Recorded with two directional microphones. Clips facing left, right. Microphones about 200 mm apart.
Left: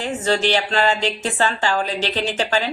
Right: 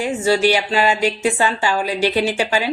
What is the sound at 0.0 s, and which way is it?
Speech, 10° right (ahead or behind).